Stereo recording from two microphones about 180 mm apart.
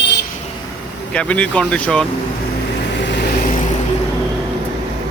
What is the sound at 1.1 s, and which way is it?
Speech, 5° left (ahead or behind).